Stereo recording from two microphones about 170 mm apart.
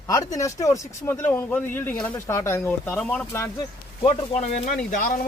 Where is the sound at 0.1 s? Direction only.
20° left (ahead or behind).